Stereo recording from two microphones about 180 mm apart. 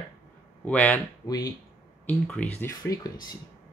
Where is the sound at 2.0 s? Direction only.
10° left (ahead or behind).